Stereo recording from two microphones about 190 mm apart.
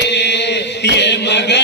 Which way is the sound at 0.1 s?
65° left (ahead or behind).